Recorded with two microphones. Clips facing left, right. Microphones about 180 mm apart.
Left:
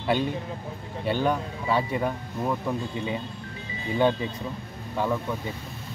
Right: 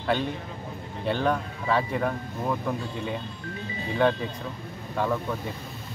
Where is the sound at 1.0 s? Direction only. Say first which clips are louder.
Even; 5° left (ahead or behind).